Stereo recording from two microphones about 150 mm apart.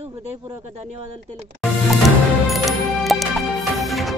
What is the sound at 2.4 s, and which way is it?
Music, centre (ahead or behind).